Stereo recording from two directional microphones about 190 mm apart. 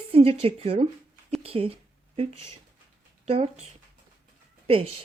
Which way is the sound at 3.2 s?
30° right (ahead or behind).